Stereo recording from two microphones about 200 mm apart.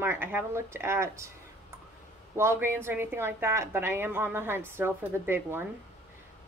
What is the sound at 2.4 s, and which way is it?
A woman's voice, 10° right (ahead or behind).